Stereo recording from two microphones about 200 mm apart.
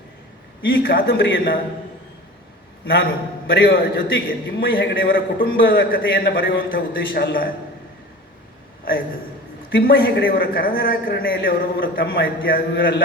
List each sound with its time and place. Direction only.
0.8 s a man's voice: 50° left (ahead or behind)
2.8 s a man's voice: 50° left (ahead or behind)
9.7 s a man's voice: 50° left (ahead or behind)